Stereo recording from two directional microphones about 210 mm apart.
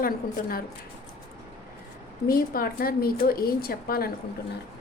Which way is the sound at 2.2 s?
45° left (ahead or behind).